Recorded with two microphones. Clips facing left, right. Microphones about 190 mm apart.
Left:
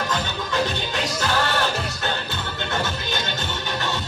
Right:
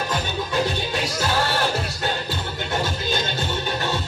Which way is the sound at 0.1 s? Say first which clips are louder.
Right 1 dB; 15° right (ahead or behind).